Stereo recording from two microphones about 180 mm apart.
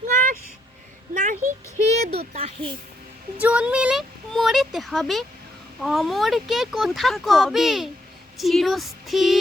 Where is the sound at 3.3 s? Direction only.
5° right (ahead or behind).